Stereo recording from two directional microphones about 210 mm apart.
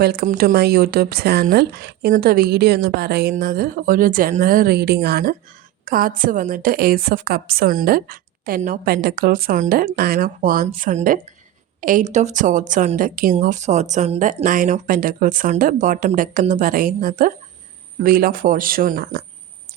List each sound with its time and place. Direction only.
0.0 s speech: 45° right (ahead or behind)